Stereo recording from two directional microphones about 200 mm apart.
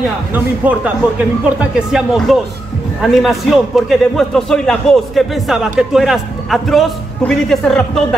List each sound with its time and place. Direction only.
0.3 s a man's voice: 10° right (ahead or behind)